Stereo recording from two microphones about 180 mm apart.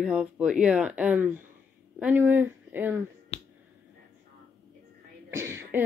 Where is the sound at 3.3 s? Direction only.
35° left (ahead or behind).